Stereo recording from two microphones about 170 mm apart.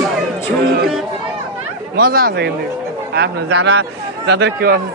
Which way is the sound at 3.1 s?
80° right.